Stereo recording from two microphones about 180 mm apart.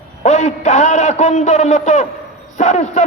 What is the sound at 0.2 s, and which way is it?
A man's voice, 40° left (ahead or behind).